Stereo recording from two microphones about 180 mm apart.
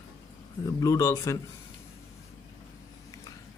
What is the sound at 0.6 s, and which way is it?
Speech, 20° left (ahead or behind).